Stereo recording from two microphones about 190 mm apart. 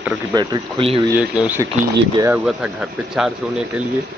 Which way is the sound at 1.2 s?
10° right (ahead or behind).